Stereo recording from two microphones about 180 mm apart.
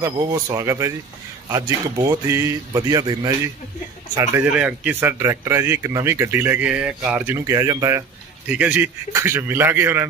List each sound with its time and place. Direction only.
0.0 s speech: 20° right (ahead or behind)